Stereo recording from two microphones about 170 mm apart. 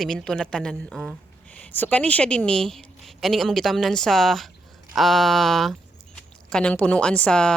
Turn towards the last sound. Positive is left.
turn(degrees=5)  # may be behind; listen again after turning